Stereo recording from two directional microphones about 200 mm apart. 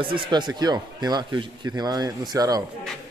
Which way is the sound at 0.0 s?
25° right (ahead or behind).